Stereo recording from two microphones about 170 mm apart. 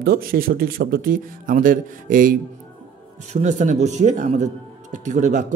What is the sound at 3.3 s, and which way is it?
A man's voice, 45° right (ahead or behind).